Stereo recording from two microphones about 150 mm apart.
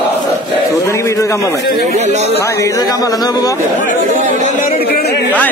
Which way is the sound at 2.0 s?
50° right (ahead or behind).